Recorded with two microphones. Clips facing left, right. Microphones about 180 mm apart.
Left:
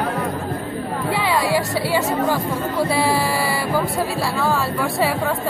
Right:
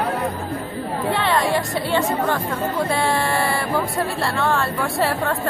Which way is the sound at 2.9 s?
5° left (ahead or behind).